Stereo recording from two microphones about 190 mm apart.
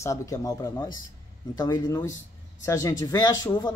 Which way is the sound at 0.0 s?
15° left (ahead or behind).